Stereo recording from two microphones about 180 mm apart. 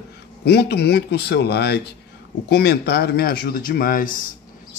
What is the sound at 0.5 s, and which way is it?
Speech, 65° left (ahead or behind).